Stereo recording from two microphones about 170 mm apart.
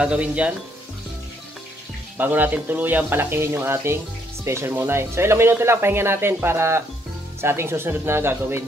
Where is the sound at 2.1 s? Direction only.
10° right (ahead or behind).